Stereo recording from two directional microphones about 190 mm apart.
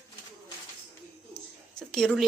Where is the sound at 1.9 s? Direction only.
Centre (ahead or behind).